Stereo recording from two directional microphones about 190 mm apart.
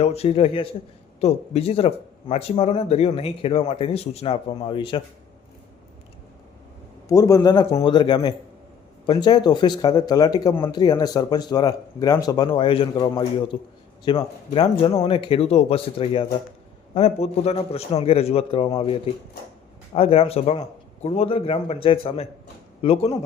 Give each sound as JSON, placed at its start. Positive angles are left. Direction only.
{"t": 0.0, "sound": "speech", "side_deg": 35}
{"t": 7.1, "sound": "speech", "side_deg": 15}
{"t": 19.9, "sound": "speech", "side_deg": 30}